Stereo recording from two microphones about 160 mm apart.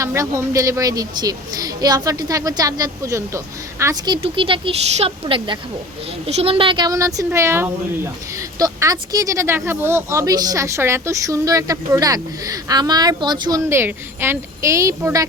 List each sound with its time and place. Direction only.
0.0 s speech: 20° right (ahead or behind)
13.7 s speech: 15° right (ahead or behind)